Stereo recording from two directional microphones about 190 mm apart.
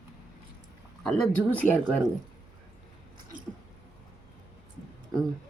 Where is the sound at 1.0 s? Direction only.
5° left (ahead or behind).